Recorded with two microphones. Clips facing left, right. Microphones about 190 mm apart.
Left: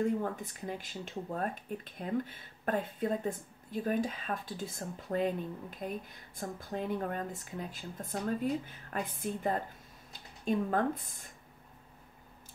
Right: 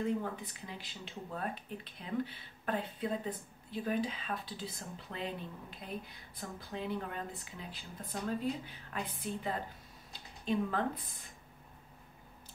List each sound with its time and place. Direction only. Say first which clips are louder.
0.0 s speech: left 3 dB; 50° left (ahead or behind)